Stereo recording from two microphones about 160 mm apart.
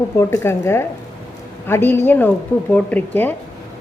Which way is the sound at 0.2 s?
15° left (ahead or behind).